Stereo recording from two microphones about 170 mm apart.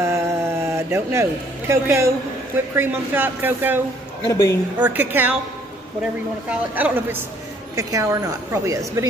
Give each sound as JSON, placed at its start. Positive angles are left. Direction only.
{"t": 0.0, "sound": "speech", "side_deg": -15}
{"t": 4.3, "sound": "a woman's voice", "side_deg": 15}
{"t": 4.7, "sound": "a woman's voice", "side_deg": -10}
{"t": 6.5, "sound": "a woman's voice", "side_deg": -10}